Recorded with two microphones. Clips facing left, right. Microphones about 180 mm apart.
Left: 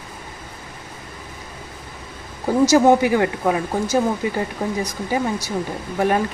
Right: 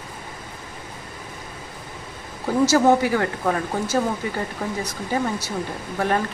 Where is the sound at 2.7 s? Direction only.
15° left (ahead or behind).